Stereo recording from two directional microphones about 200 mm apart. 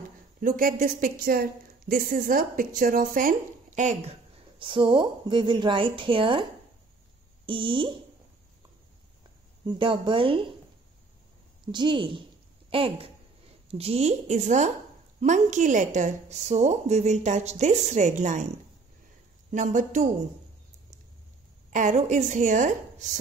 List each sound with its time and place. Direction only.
0.4 s a woman's voice: 45° right (ahead or behind); by 6.4 s 25° right (ahead or behind)
7.4 s speech: 25° right (ahead or behind)
9.7 s speech: 25° right (ahead or behind)
11.7 s a woman's voice: 25° right (ahead or behind)
19.5 s speech: 40° right (ahead or behind)
21.6 s speech: 40° right (ahead or behind)